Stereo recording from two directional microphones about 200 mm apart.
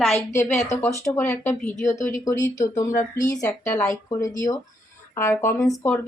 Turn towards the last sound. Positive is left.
turn(degrees=15)  # may be behind; listen again after turning